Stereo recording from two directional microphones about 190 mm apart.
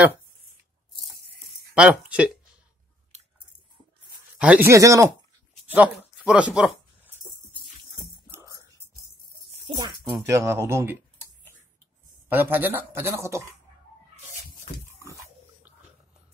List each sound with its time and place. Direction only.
1.7 s speech: 5° right (ahead or behind)
4.4 s speech: 10° right (ahead or behind)
8.3 s whispering: 15° right (ahead or behind)
9.7 s speech: 25° right (ahead or behind)
12.3 s speech: 10° right (ahead or behind)
15.0 s dog: 15° right (ahead or behind)